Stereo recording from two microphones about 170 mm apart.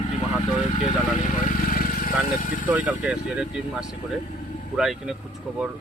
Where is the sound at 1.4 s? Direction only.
55° left (ahead or behind).